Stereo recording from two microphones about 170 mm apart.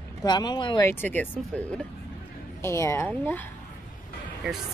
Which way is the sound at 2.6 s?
15° left (ahead or behind).